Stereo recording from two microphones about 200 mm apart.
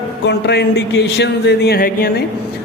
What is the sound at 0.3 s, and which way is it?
A man's voice, 55° left (ahead or behind).